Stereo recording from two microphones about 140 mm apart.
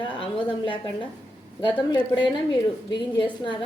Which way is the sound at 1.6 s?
35° left (ahead or behind).